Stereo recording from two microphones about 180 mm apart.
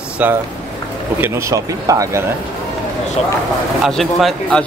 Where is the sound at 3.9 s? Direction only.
Centre (ahead or behind).